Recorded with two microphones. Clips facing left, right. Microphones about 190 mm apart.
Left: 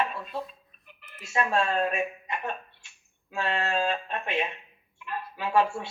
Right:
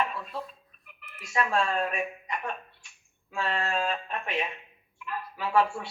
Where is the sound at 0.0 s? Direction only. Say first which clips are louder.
Left 1 dB; 25° left (ahead or behind).